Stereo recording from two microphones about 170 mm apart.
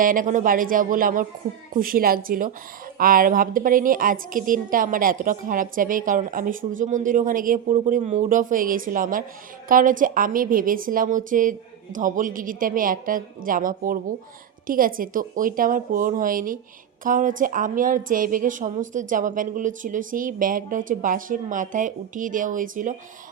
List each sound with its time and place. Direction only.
0.0 s a woman's voice: 55° right (ahead or behind)